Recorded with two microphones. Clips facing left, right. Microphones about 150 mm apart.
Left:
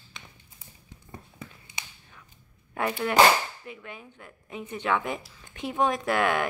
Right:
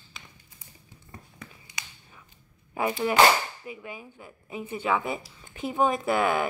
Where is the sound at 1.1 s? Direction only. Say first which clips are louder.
Left 2 dB; 25° left (ahead or behind).